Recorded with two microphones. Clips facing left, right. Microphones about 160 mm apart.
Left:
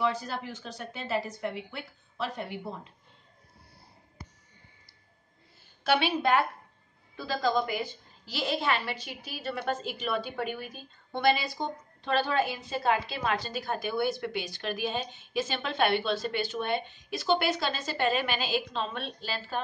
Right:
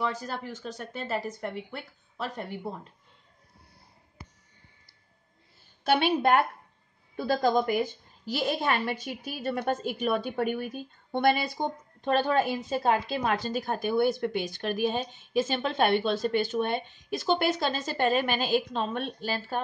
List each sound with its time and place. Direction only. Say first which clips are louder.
0.0 s a woman's voice: left 1 dB; 45° right (ahead or behind)
5.9 s a woman's voice: right 2 dB; 50° right (ahead or behind)